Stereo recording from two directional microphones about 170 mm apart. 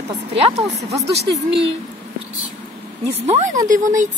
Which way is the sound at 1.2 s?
85° right.